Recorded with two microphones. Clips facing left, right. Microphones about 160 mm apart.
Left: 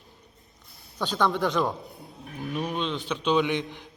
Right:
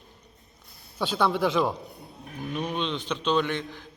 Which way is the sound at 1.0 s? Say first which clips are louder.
Right 1 dB; 10° right (ahead or behind).